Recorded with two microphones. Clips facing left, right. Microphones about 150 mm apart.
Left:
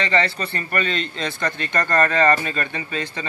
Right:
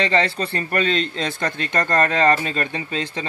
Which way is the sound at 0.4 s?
35° right (ahead or behind).